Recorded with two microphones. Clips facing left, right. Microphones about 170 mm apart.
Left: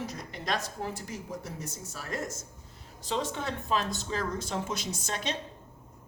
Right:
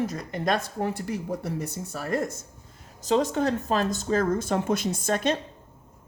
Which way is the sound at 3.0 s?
40° right (ahead or behind).